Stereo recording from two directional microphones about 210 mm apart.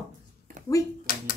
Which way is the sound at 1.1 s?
45° left (ahead or behind).